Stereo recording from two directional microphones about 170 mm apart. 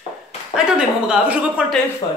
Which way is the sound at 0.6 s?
5° right (ahead or behind).